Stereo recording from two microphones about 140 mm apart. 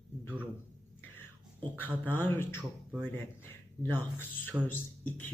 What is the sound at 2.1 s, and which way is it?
Speech, 15° left (ahead or behind).